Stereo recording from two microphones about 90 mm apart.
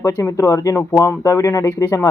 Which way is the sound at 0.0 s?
35° left (ahead or behind).